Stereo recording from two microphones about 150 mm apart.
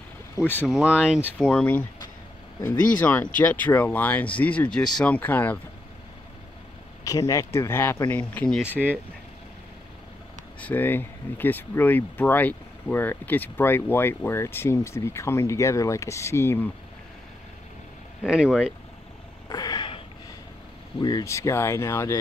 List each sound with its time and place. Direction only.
0.7 s speech: 5° right (ahead or behind)
1.2 s speech: 5° left (ahead or behind)
3.0 s speech: 10° left (ahead or behind)
7.1 s speech: 20° left (ahead or behind)
10.6 s speech: 10° left (ahead or behind)
18.2 s speech: 5° right (ahead or behind)
19.5 s cat: 30° left (ahead or behind)
21.0 s speech: 25° left (ahead or behind)